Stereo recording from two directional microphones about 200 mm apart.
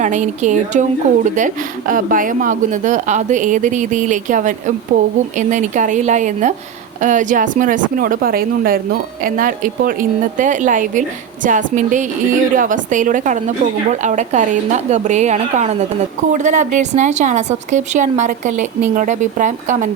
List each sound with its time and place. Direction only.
0.0 s a woman's voice: 35° right (ahead or behind)